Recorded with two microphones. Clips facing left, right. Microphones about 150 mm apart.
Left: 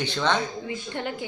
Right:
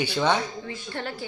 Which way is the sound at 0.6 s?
15° left (ahead or behind).